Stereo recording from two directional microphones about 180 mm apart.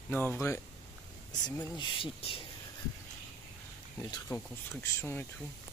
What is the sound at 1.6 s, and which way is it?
Speech, 25° left (ahead or behind).